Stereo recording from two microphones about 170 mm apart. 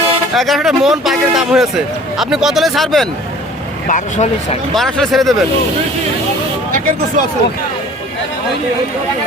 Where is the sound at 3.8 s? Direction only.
50° left (ahead or behind).